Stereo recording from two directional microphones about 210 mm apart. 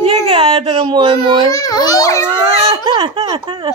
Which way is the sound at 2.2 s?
25° right (ahead or behind).